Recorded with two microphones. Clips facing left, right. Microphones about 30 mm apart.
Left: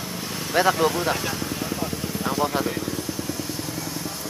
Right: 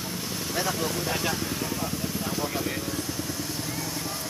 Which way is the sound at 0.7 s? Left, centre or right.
Left.